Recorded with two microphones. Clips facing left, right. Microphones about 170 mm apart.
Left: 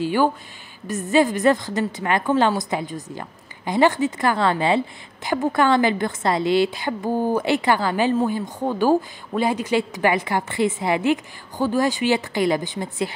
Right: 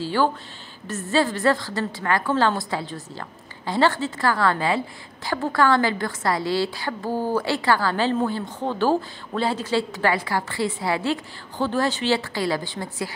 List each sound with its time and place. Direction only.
0.0 s a woman's voice: 15° left (ahead or behind)